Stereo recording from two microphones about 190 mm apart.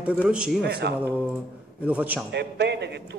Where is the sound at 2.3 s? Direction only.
65° right (ahead or behind).